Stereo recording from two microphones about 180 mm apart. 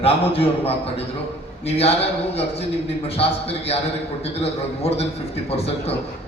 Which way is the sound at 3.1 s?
35° left (ahead or behind).